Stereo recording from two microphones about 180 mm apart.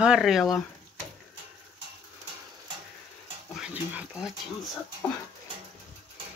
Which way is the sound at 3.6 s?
5° right (ahead or behind).